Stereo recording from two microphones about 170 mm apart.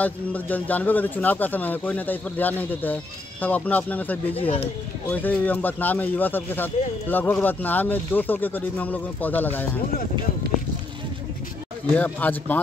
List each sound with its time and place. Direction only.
0.0 s speech: 10° left (ahead or behind)
4.4 s speech: 35° left (ahead or behind)
5.1 s speech: 10° left (ahead or behind)
11.9 s speech: 10° left (ahead or behind)